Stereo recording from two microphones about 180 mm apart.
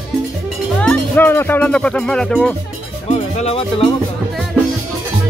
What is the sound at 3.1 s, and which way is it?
Music, 35° left (ahead or behind).